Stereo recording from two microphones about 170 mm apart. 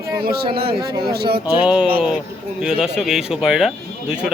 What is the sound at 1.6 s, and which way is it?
Speech, 5° right (ahead or behind).